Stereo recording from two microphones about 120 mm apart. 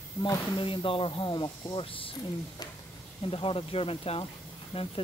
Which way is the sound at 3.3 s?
50° left (ahead or behind).